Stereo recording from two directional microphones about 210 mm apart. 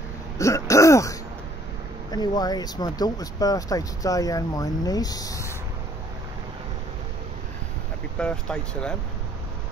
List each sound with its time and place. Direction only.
0.4 s throat clearing: 15° left (ahead or behind)
2.0 s speech: 20° left (ahead or behind)
8.2 s speech: 5° left (ahead or behind)